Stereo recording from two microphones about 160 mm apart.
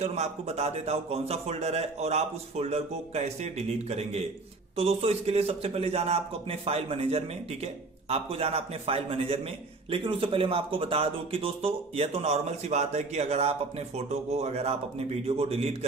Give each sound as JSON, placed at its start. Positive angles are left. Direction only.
{"t": 0.0, "sound": "speech", "side_deg": -40}